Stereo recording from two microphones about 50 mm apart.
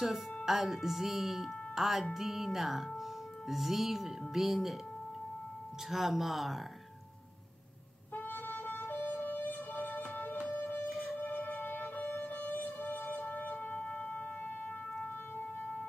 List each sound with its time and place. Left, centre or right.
0.5 s speech: centre
5.9 s speech: centre
8.1 s music: left
10.9 s wind instrument: centre
11.1 s music: left